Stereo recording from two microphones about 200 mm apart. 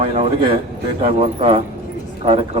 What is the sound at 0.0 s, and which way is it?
A man's voice, 30° right (ahead or behind).